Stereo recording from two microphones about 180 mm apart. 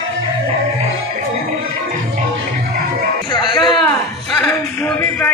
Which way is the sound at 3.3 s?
25° left (ahead or behind).